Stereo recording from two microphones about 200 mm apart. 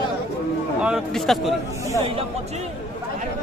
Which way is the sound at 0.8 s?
Centre (ahead or behind).